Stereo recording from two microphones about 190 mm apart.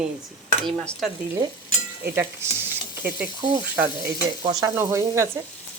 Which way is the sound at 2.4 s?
15° right (ahead or behind).